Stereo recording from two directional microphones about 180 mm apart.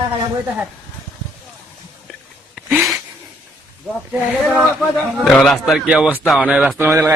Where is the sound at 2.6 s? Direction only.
Centre (ahead or behind).